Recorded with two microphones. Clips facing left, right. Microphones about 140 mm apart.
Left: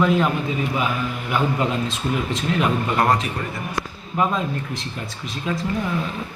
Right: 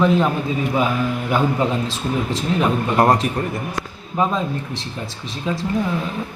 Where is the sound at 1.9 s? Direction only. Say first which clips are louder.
Right 1 dB; 30° right (ahead or behind).